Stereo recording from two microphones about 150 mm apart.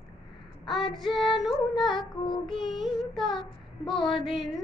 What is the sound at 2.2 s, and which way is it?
Child singing, 30° left (ahead or behind).